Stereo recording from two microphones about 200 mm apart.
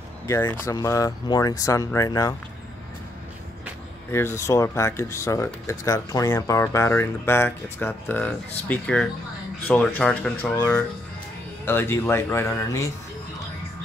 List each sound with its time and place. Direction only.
0.3 s speech: 15° left (ahead or behind)
4.1 s speech: 10° left (ahead or behind)